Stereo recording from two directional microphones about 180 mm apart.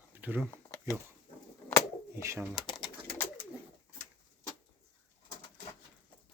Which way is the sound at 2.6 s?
25° left (ahead or behind).